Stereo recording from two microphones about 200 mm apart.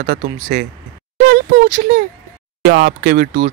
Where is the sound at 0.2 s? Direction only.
35° right (ahead or behind).